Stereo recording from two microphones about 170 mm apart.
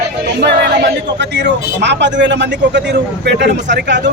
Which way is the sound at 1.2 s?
90° right.